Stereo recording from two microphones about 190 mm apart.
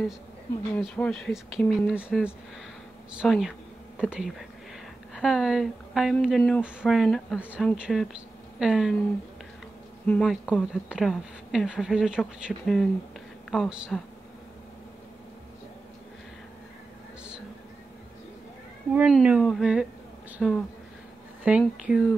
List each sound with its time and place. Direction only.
0.7 s a woman's voice: 5° left (ahead or behind)
10.0 s a woman's voice: centre (ahead or behind)
18.9 s a woman's voice: 5° right (ahead or behind)